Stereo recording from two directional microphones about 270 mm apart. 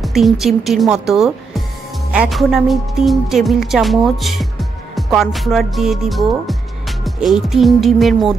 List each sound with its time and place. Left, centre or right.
0.0 s speech: centre